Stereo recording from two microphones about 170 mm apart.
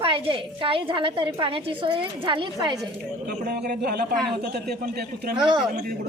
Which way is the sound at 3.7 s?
60° right (ahead or behind).